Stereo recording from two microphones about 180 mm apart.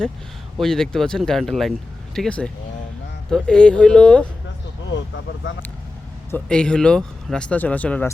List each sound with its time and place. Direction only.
0.6 s speech: 5° left (ahead or behind)
4.9 s speech: 85° left
6.3 s speech: 5° left (ahead or behind)